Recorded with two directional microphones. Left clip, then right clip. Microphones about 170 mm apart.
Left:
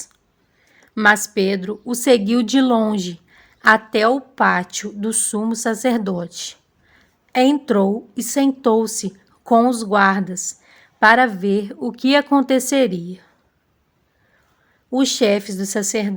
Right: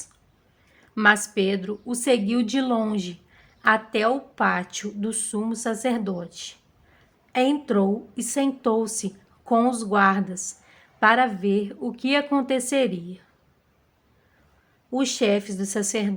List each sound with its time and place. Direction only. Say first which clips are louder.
0.9 s a woman's voice: left 4 dB; 30° left (ahead or behind)
14.8 s a woman's voice: left 6 dB; 35° left (ahead or behind)